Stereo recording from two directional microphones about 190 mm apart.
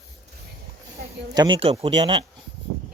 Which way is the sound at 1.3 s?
20° right (ahead or behind).